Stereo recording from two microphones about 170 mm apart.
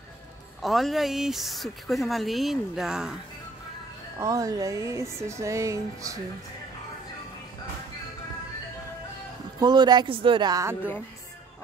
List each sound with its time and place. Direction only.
0.6 s speech: centre (ahead or behind)
4.2 s speech: 20° right (ahead or behind)
9.6 s speech: 25° right (ahead or behind)